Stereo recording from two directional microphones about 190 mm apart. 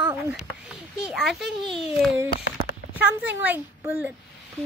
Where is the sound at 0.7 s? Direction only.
Centre (ahead or behind).